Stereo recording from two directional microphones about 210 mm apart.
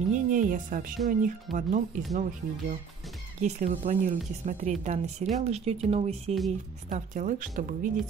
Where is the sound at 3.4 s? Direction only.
35° right (ahead or behind).